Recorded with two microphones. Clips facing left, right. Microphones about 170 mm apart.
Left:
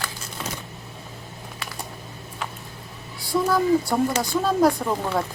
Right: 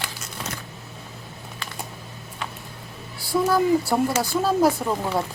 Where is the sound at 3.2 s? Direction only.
Centre (ahead or behind).